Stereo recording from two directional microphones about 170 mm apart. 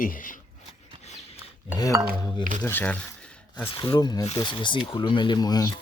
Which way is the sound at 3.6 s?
30° left (ahead or behind).